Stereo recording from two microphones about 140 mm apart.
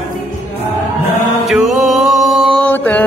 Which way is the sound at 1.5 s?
Centre (ahead or behind).